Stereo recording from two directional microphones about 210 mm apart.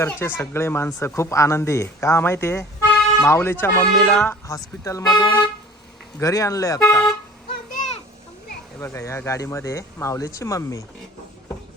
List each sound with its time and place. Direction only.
0.0 s speech: 10° left (ahead or behind)
4.8 s speech: 15° left (ahead or behind)
8.8 s speech: 15° left (ahead or behind)